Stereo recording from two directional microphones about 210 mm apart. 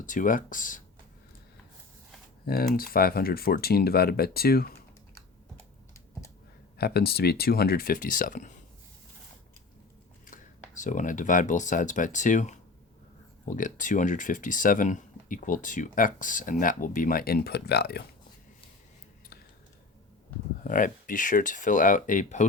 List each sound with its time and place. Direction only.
0.0 s speech: 40° left (ahead or behind)
2.4 s speech: 45° left (ahead or behind)
6.7 s speech: 50° left (ahead or behind)
10.2 s speech: 40° left (ahead or behind)
20.7 s speech: 40° left (ahead or behind)